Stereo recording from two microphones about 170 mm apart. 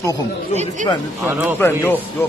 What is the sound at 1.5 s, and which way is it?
Speech, 10° left (ahead or behind).